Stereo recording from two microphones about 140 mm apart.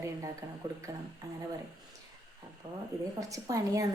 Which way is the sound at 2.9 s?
25° right (ahead or behind).